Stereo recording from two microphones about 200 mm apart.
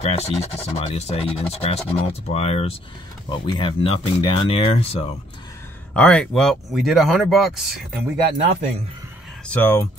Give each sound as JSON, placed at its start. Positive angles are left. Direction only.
{"t": 0.0, "sound": "speech", "side_deg": 30}
{"t": 5.9, "sound": "speech", "side_deg": 5}
{"t": 9.5, "sound": "speech", "side_deg": 10}